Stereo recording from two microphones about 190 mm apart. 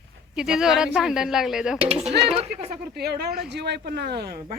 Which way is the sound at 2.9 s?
60° right (ahead or behind).